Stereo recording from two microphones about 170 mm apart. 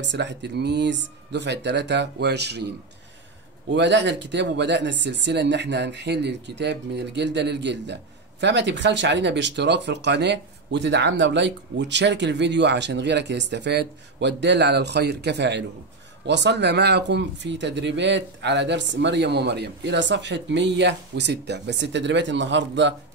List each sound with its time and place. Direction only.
0.0 s speech: 90° right
3.7 s speech: 90° right